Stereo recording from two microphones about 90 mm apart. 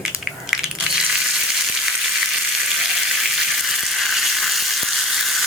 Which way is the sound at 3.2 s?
Centre (ahead or behind).